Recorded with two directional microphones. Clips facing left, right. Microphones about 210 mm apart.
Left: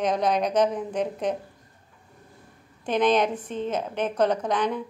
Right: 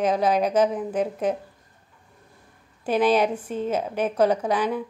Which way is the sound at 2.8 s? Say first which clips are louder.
Right 2 dB; 5° right (ahead or behind).